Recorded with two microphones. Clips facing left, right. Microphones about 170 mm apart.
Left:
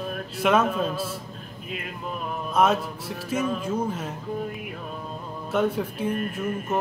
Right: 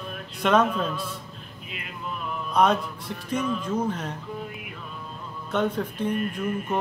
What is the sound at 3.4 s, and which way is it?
Music, 45° left (ahead or behind).